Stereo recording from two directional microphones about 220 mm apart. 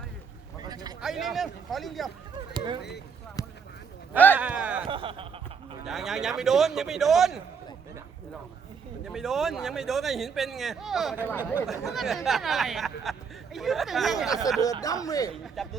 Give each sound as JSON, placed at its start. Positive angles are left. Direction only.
{"t": 0.6, "sound": "a sound", "side_deg": -20}
{"t": 1.0, "sound": "a man's voice", "side_deg": 0}
{"t": 2.5, "sound": "speech", "side_deg": -20}
{"t": 3.4, "sound": "a sound", "side_deg": 15}
{"t": 4.4, "sound": "a man's voice", "side_deg": -5}
{"t": 4.9, "sound": "speech", "side_deg": -25}
{"t": 5.8, "sound": "a man's voice", "side_deg": 0}
{"t": 9.0, "sound": "a man's voice", "side_deg": 0}
{"t": 14.3, "sound": "speech", "side_deg": 15}
{"t": 15.6, "sound": "a man's voice", "side_deg": 0}